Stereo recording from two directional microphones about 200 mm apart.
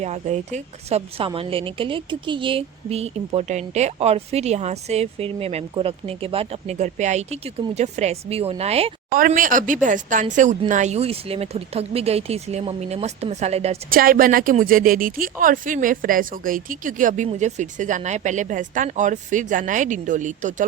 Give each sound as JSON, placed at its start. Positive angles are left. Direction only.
{"t": 0.0, "sound": "a woman's voice", "side_deg": -35}
{"t": 9.0, "sound": "a woman's voice", "side_deg": -45}
{"t": 13.9, "sound": "a woman's voice", "side_deg": -45}